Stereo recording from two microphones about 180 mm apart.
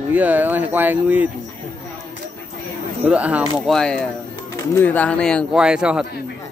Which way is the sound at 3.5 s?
5° left (ahead or behind).